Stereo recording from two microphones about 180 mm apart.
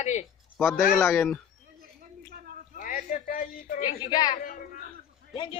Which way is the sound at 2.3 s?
55° right (ahead or behind).